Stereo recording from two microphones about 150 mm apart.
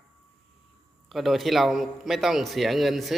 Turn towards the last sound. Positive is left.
turn(degrees=0)  # may be behind; listen again after turning